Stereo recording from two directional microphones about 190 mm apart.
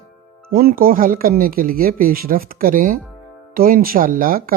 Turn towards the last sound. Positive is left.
turn(degrees=-50)  # may be behind; listen again after turning